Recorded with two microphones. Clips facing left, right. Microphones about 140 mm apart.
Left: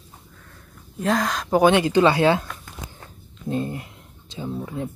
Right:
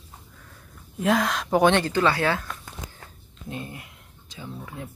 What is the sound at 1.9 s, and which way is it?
Speech, 20° left (ahead or behind).